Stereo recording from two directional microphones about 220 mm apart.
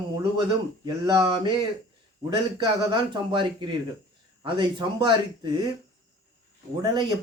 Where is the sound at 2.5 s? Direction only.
20° right (ahead or behind).